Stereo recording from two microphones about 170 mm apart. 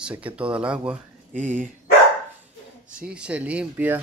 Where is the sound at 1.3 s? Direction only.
45° right (ahead or behind).